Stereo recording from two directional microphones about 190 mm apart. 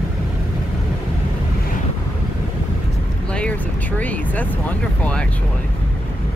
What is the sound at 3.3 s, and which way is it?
Speech, 5° left (ahead or behind).